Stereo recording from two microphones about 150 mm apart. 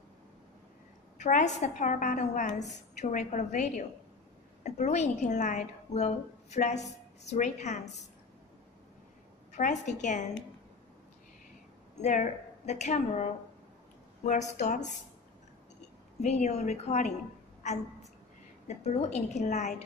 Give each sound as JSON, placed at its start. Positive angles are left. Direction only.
{"t": 1.1, "sound": "a woman's voice", "side_deg": 50}
{"t": 9.6, "sound": "a woman's voice", "side_deg": 55}
{"t": 12.0, "sound": "a woman's voice", "side_deg": 55}
{"t": 16.2, "sound": "a woman's voice", "side_deg": 50}
{"t": 18.7, "sound": "a woman's voice", "side_deg": 45}